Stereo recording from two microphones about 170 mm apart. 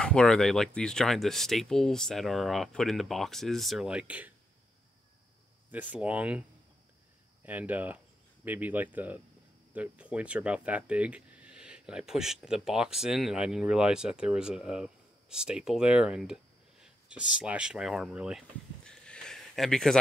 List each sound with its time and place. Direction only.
0.0 s speech: 5° left (ahead or behind)
5.7 s speech: 10° right (ahead or behind)
7.4 s speech: 10° right (ahead or behind)
18.9 s a sound: 5° left (ahead or behind)